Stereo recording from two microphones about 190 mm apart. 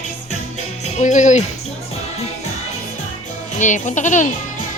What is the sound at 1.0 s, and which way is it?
Speech, 40° left (ahead or behind).